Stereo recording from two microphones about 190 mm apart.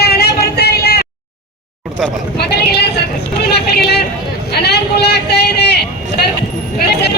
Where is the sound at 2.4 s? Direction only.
60° left (ahead or behind).